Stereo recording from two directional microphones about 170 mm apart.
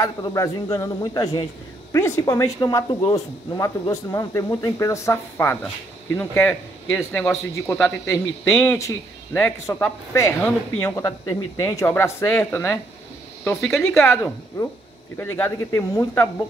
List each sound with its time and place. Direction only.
0.0 s speech: 20° left (ahead or behind)
13.4 s speech: 5° left (ahead or behind)